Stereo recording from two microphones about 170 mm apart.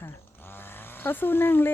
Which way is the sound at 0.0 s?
10° left (ahead or behind).